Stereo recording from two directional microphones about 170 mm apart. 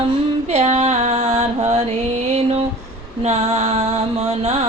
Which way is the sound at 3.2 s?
40° right (ahead or behind).